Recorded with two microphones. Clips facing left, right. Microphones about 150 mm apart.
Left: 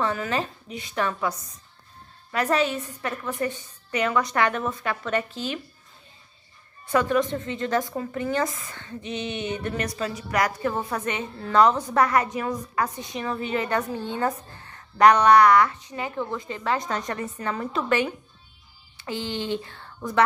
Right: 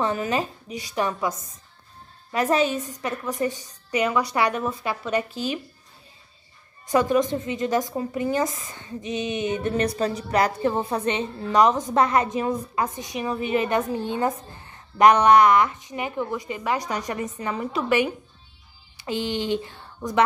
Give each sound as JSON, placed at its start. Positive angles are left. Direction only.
{"t": 0.0, "sound": "speech", "side_deg": -20}
{"t": 2.3, "sound": "a woman's voice", "side_deg": -15}
{"t": 6.9, "sound": "a woman's voice", "side_deg": -15}